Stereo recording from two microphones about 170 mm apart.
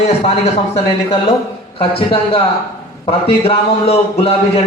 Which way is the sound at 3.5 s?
35° left (ahead or behind).